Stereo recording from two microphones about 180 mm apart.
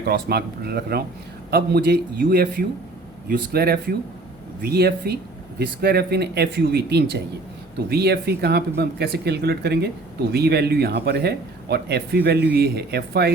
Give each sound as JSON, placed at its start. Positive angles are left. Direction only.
{"t": 0.0, "sound": "speech", "side_deg": -60}